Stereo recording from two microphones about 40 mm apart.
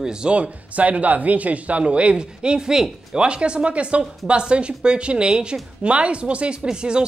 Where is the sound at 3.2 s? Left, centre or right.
Right.